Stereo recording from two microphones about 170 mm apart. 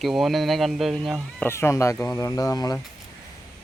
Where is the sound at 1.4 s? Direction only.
15° left (ahead or behind).